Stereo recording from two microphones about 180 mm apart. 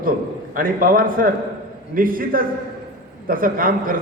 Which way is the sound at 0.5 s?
50° right (ahead or behind).